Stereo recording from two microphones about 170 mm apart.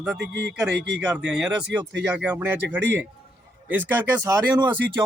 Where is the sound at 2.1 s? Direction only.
10° right (ahead or behind).